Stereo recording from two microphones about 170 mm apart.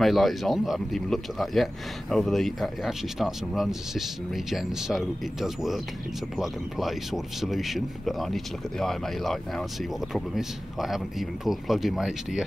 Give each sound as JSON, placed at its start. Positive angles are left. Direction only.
{"t": 0.0, "sound": "speech", "side_deg": 0}